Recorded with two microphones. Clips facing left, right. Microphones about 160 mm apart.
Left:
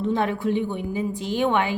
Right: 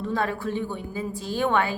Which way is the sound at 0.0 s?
20° left (ahead or behind).